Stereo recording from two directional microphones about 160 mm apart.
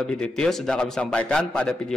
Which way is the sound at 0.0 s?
5° left (ahead or behind).